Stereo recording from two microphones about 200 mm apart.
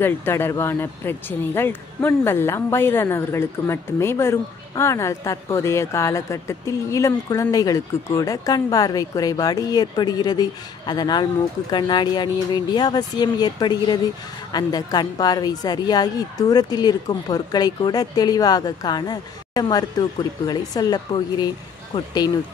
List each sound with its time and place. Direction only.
0.0 s a woman's voice: 10° left (ahead or behind)